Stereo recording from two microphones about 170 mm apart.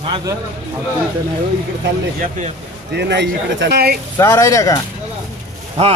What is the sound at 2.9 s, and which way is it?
Speech, 85° right.